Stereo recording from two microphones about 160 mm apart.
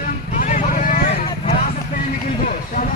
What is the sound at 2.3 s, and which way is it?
Speech, 55° left (ahead or behind).